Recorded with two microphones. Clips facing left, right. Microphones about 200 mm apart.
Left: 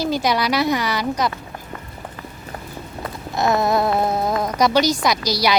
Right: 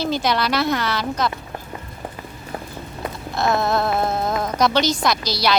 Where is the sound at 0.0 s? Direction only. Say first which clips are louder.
Left 1 dB; 10° left (ahead or behind).